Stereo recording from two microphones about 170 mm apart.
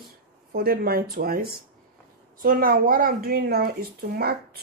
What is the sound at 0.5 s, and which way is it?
Speech, 60° right (ahead or behind).